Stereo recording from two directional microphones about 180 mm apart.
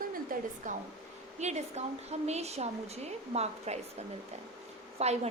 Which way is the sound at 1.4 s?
40° right (ahead or behind).